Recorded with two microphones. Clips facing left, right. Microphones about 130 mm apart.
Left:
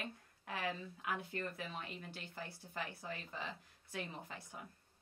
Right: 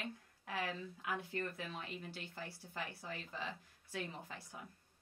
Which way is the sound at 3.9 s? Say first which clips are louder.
Right 1 dB; 20° left (ahead or behind).